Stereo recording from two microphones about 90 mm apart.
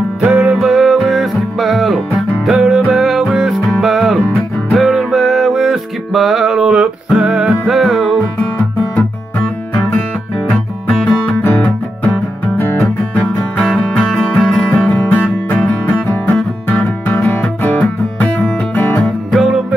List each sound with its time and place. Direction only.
0.4 s music: 5° right (ahead or behind)
10.9 s music: 5° left (ahead or behind)
13.7 s music: 10° left (ahead or behind)
19.3 s music: centre (ahead or behind)